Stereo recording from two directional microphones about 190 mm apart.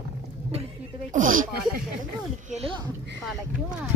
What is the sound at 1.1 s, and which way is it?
Speech, 45° right (ahead or behind).